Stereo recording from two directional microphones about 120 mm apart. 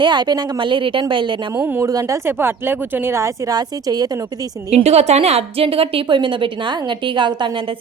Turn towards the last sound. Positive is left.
turn(degrees=-40)  # may be behind; listen again after turning